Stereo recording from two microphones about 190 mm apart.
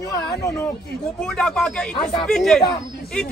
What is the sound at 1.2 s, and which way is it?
A man's voice, 5° left (ahead or behind).